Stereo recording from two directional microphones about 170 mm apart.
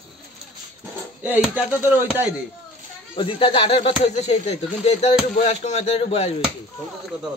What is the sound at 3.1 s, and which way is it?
Speech, 30° left (ahead or behind).